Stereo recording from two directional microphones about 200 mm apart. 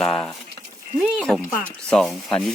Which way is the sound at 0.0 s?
5° left (ahead or behind).